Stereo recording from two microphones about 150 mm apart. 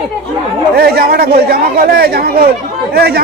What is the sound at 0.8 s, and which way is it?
Speech, 90° right.